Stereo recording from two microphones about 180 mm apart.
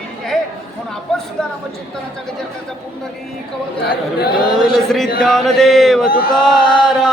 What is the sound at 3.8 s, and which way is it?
Speech, 60° left (ahead or behind).